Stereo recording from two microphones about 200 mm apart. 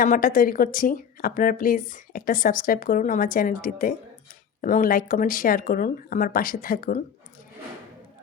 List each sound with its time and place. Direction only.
0.0 s a woman's voice: 45° left (ahead or behind)